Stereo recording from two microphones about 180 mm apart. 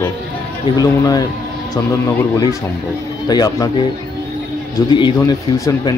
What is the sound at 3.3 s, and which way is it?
Speech, 20° left (ahead or behind).